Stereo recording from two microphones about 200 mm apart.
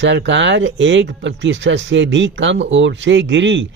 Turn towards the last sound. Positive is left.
turn(degrees=-65)  # may be behind; listen again after turning